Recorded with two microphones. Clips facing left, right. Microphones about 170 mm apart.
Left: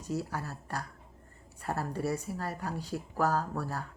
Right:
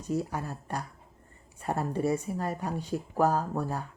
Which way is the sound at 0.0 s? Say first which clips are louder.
Right 4 dB; 20° right (ahead or behind).